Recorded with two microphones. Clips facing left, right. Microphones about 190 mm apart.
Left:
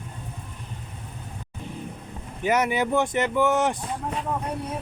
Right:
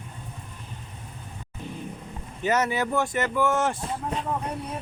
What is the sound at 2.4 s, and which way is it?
Speech, 15° left (ahead or behind).